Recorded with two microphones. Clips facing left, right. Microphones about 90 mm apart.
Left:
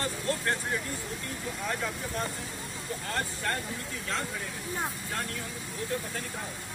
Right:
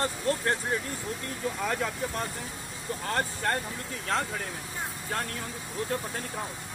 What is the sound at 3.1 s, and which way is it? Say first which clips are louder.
Speech: right 4 dB; 45° right (ahead or behind).